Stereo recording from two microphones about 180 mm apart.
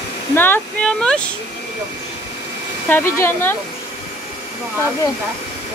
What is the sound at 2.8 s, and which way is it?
Speech, 15° left (ahead or behind).